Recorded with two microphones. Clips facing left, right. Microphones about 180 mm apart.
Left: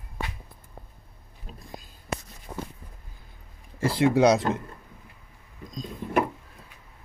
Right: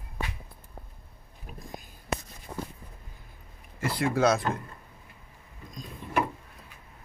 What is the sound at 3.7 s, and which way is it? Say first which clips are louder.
Speech: left 6 dB; 30° left (ahead or behind).